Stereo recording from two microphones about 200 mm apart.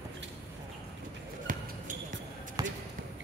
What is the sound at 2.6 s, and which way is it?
Basketball bounce, 15° right (ahead or behind).